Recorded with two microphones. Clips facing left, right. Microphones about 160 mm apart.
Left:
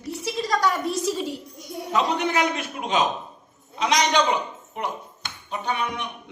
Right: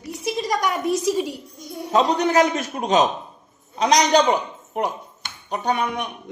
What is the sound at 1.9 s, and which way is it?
A man's voice, 40° right (ahead or behind).